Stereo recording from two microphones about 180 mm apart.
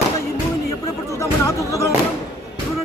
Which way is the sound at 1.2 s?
15° left (ahead or behind).